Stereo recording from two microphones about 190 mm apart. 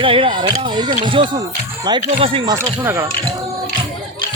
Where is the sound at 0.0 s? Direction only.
30° right (ahead or behind).